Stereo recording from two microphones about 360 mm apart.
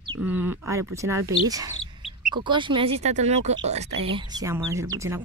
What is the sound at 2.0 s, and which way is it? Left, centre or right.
Chicken, centre.